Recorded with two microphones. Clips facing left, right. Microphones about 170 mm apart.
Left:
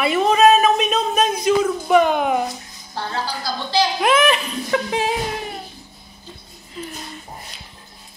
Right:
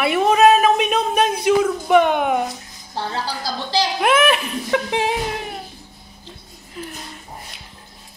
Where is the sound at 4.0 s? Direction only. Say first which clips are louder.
Right 2 dB; 5° right (ahead or behind).